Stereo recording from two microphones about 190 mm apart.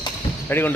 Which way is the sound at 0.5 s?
10° left (ahead or behind).